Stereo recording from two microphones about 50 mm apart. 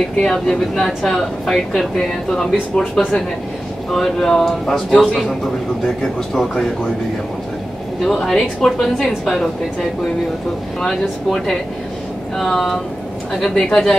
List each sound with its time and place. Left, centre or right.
0.2 s a woman's voice: centre
2.7 s speech: left
3.9 s a woman's voice: centre
8.0 s a woman's voice: centre
11.2 s a woman's voice: centre